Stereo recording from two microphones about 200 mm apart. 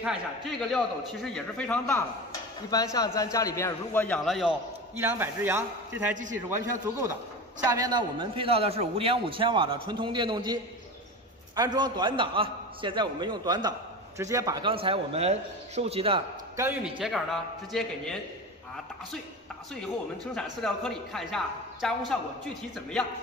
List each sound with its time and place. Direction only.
0.0 s a man's voice: centre (ahead or behind)
4.9 s a man's voice: 10° right (ahead or behind); by 16.2 s 30° right (ahead or behind)
16.5 s a man's voice: 10° right (ahead or behind)
17.0 s a man's voice: centre (ahead or behind)
20.3 s a man's voice: 5° left (ahead or behind)